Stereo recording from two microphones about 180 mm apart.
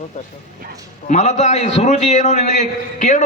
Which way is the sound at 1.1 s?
40° left (ahead or behind).